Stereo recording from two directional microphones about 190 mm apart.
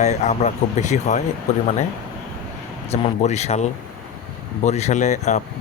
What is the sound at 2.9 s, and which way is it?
Speech, 35° left (ahead or behind).